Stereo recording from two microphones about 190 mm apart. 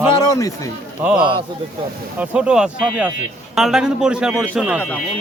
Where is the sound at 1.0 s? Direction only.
5° right (ahead or behind).